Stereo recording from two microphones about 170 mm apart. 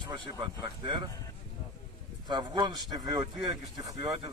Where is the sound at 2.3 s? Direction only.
25° right (ahead or behind).